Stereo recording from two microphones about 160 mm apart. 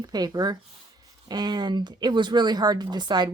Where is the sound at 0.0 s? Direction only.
25° right (ahead or behind).